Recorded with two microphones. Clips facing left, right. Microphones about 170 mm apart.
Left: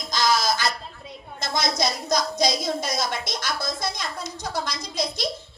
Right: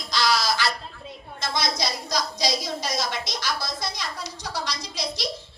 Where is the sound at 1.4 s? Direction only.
50° left (ahead or behind).